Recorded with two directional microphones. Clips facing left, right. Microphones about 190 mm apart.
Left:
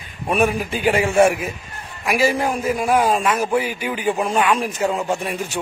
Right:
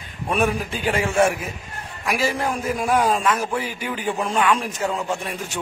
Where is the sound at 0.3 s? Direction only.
10° left (ahead or behind).